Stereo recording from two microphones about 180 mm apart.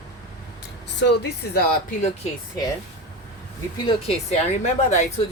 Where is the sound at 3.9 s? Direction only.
35° left (ahead or behind).